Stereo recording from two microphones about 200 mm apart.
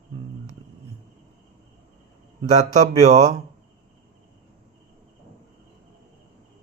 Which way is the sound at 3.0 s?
35° right (ahead or behind).